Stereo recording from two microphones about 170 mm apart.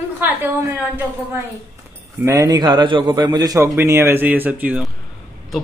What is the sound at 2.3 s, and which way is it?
A man's voice, 20° right (ahead or behind).